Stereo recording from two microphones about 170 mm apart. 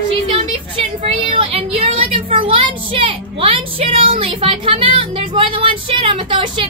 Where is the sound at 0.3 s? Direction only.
30° right (ahead or behind).